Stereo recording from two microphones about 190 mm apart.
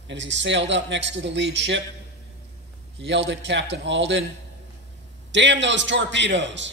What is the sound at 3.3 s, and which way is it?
Speech, 70° right (ahead or behind).